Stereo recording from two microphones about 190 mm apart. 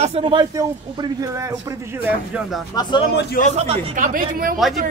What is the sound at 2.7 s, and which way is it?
Speech, 20° left (ahead or behind).